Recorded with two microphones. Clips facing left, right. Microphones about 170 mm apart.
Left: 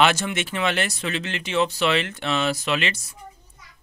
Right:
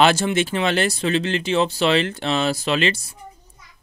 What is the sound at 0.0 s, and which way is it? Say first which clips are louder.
Speech: right 4 dB; 30° right (ahead or behind).